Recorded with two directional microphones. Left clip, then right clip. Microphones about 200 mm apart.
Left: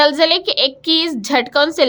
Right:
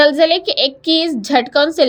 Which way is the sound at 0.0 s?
5° right (ahead or behind).